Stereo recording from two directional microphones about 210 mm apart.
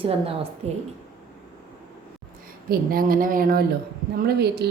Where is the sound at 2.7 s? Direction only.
45° right (ahead or behind).